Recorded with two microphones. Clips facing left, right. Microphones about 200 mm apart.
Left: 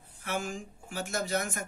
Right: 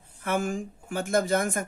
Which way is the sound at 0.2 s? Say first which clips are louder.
Right 7 dB; 55° right (ahead or behind).